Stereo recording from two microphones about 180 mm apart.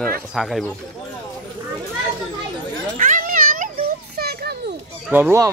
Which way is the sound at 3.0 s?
50° right (ahead or behind).